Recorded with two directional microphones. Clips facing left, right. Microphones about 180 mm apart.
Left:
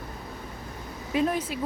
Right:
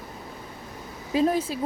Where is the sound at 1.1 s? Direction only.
30° right (ahead or behind).